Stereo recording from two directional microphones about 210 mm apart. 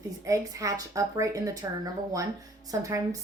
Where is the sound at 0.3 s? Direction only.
15° right (ahead or behind).